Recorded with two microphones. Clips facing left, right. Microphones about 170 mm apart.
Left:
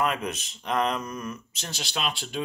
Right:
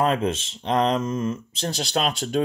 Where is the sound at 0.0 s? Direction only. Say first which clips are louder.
Right 6 dB; 30° right (ahead or behind).